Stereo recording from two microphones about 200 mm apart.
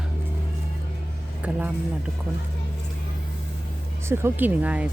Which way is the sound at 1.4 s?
5° right (ahead or behind).